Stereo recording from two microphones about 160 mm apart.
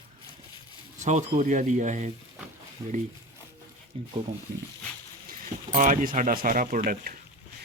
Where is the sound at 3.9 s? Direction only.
35° right (ahead or behind).